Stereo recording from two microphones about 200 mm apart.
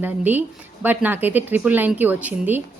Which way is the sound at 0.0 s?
10° right (ahead or behind).